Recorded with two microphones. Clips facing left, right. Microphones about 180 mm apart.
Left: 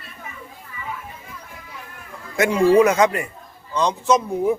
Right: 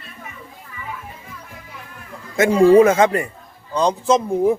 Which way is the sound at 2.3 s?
30° right (ahead or behind).